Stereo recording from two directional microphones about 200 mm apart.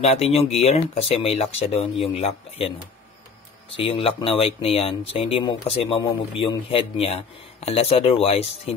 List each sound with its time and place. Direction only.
0.0 s speech: 30° left (ahead or behind)
3.7 s speech: 25° left (ahead or behind)